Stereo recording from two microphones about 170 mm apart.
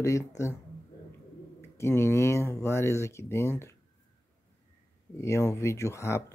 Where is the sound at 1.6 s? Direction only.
15° left (ahead or behind).